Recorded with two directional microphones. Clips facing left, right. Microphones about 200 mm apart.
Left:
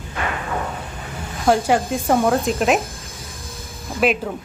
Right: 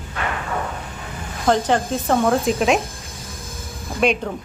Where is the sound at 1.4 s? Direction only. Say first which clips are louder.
Left 1 dB; 10° left (ahead or behind).